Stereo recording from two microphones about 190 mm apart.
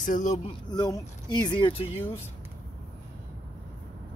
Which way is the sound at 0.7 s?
20° left (ahead or behind).